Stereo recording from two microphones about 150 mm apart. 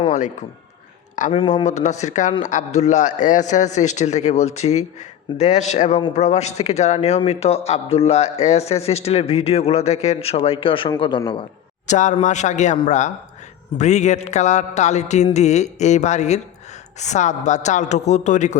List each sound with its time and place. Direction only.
1.3 s speech: 35° left (ahead or behind)
1.6 s speech: 50° left (ahead or behind); by 11.4 s 35° left (ahead or behind)
11.9 s a man's voice: 55° left (ahead or behind)